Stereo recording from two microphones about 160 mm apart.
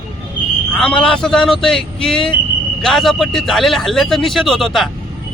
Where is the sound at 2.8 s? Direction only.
Centre (ahead or behind).